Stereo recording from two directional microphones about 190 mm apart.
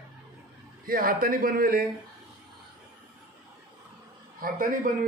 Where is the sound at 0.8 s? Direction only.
50° right (ahead or behind).